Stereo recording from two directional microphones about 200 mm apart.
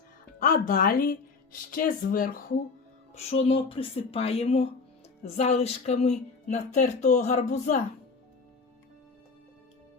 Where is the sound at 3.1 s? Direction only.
30° left (ahead or behind).